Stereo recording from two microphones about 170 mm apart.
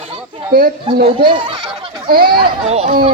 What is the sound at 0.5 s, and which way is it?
Speech, 60° right (ahead or behind).